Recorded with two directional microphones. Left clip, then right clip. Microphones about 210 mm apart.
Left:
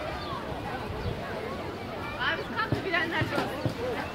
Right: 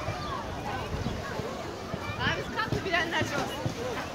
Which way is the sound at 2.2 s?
35° right (ahead or behind).